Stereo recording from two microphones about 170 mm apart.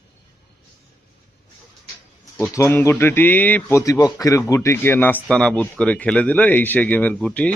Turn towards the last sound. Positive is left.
turn(degrees=5)  # may be behind; listen again after turning